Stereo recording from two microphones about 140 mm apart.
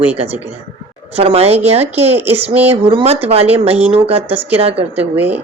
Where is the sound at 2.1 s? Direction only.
15° right (ahead or behind).